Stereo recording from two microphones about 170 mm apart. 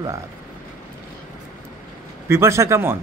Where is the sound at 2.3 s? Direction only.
15° right (ahead or behind).